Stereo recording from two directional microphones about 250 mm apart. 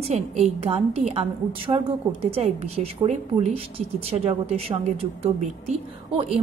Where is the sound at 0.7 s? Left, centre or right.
Right.